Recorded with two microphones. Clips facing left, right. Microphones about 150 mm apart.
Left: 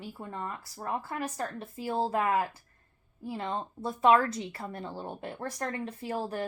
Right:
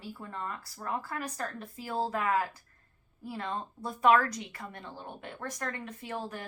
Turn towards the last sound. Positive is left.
turn(degrees=35)  # may be behind; listen again after turning